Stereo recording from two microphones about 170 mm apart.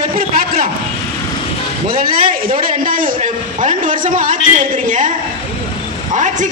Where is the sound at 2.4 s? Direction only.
55° right (ahead or behind).